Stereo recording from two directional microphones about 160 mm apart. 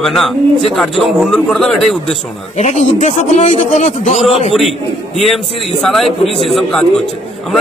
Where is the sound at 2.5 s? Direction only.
45° left (ahead or behind).